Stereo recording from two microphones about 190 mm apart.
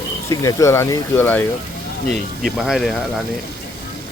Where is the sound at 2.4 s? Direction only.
Centre (ahead or behind).